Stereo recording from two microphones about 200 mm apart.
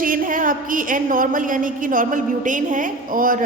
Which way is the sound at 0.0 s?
45° right (ahead or behind).